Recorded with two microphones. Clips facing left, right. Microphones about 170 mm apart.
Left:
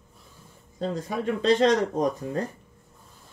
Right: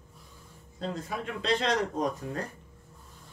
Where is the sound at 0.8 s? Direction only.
35° left (ahead or behind).